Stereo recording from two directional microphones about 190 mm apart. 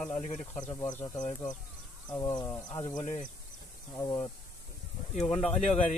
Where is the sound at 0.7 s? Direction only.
15° left (ahead or behind).